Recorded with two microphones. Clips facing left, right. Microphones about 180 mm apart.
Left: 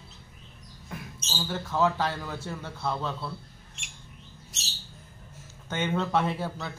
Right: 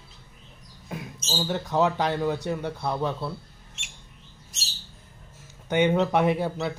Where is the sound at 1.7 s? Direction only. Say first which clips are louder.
Right 2 dB; 20° right (ahead or behind).